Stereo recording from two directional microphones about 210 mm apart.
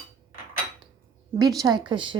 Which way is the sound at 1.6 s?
20° right (ahead or behind).